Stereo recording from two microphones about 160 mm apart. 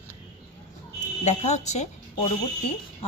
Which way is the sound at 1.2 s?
45° left (ahead or behind).